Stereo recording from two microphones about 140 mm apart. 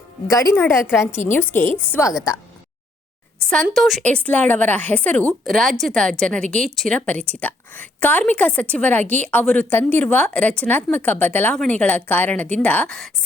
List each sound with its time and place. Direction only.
0.3 s a woman's voice: 25° left (ahead or behind)
3.5 s a woman's voice: 5° left (ahead or behind)